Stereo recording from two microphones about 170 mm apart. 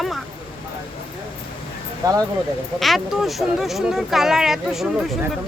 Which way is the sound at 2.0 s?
20° right (ahead or behind).